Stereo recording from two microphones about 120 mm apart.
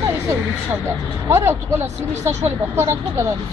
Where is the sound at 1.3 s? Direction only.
20° right (ahead or behind).